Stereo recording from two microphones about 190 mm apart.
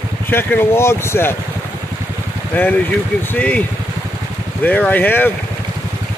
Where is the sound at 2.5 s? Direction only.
10° left (ahead or behind).